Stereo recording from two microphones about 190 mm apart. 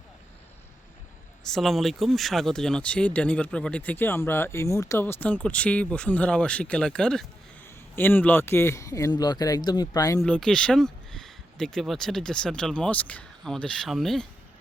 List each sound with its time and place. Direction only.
1.5 s speech: centre (ahead or behind); by 10.2 s 20° left (ahead or behind)
10.2 s speech: 5° left (ahead or behind)